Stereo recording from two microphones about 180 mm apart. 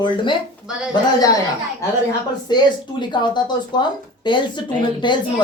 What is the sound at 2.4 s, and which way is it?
Speech, 25° left (ahead or behind).